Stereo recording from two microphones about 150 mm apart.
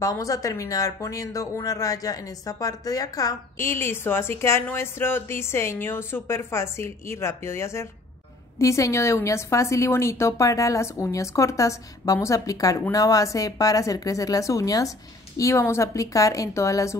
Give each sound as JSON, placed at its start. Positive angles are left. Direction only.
{"t": 0.0, "sound": "a woman's voice", "side_deg": 20}